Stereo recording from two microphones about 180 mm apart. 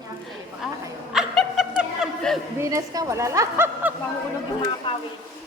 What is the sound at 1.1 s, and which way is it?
Snicker, centre (ahead or behind).